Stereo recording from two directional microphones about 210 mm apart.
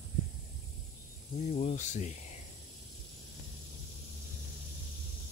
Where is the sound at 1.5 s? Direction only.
35° left (ahead or behind).